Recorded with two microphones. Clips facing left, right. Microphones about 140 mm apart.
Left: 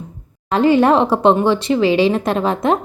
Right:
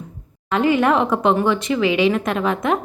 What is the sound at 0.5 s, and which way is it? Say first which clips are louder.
A woman's voice: left 4 dB; 30° left (ahead or behind).